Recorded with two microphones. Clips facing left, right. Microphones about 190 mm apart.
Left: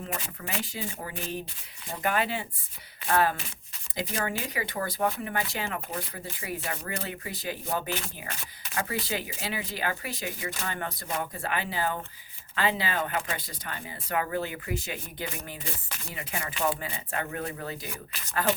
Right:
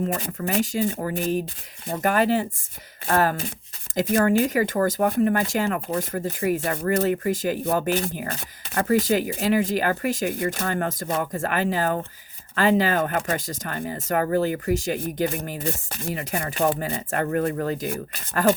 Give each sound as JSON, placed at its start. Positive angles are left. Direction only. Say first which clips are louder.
{"t": 0.0, "sound": "speech", "louder": "right 10 dB", "side_deg": -45}